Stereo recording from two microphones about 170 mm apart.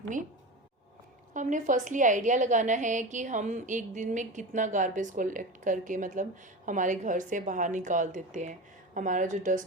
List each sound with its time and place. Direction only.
1.3 s a woman's voice: 50° right (ahead or behind)